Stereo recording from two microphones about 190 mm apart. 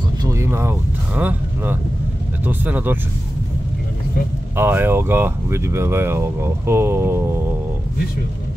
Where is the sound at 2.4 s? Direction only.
10° right (ahead or behind).